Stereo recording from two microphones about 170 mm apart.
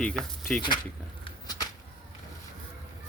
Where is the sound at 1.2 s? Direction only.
25° left (ahead or behind).